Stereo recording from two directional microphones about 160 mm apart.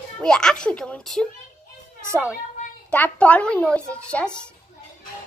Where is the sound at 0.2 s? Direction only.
5° left (ahead or behind).